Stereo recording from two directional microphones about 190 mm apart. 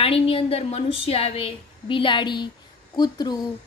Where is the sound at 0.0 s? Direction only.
30° left (ahead or behind).